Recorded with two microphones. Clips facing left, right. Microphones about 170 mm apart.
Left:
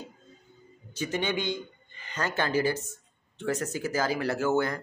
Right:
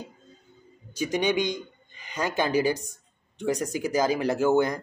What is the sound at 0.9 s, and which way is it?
A man's voice, 15° right (ahead or behind).